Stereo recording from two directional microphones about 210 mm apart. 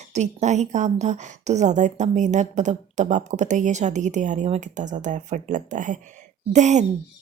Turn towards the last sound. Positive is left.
turn(degrees=-35)  # may be behind; listen again after turning